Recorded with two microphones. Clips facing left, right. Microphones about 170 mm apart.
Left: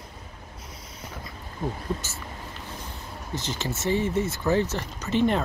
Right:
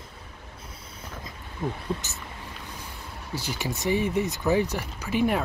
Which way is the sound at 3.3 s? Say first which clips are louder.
Even; 10° right (ahead or behind).